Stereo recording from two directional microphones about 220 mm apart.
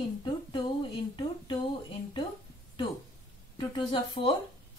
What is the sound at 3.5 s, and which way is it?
Speech, 25° left (ahead or behind).